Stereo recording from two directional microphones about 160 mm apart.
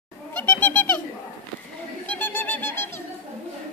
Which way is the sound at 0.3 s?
15° left (ahead or behind).